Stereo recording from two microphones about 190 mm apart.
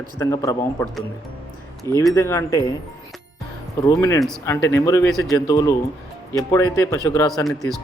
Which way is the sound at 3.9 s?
15° left (ahead or behind).